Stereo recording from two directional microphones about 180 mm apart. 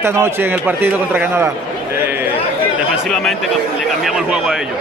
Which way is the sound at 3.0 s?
Centre (ahead or behind).